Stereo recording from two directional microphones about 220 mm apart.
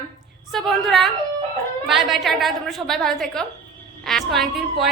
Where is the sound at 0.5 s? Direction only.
Centre (ahead or behind).